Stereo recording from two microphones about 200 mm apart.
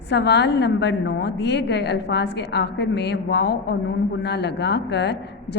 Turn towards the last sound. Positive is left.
turn(degrees=60)  # may be behind; listen again after turning